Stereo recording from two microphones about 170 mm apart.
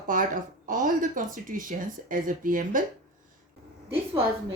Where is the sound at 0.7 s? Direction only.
50° right (ahead or behind).